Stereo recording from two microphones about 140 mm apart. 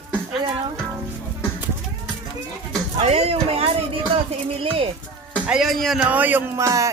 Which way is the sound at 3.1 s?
45° right (ahead or behind).